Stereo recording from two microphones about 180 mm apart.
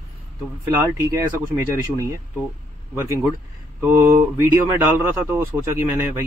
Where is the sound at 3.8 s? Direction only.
10° right (ahead or behind).